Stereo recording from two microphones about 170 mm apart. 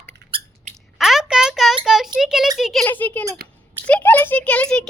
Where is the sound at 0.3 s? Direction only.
30° right (ahead or behind).